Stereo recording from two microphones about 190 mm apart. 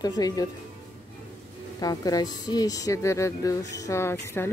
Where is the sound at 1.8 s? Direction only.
20° left (ahead or behind).